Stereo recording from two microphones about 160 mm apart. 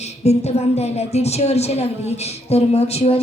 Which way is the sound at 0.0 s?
45° left (ahead or behind).